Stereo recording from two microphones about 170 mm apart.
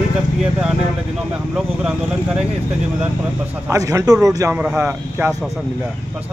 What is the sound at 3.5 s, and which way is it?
Speech, 20° right (ahead or behind).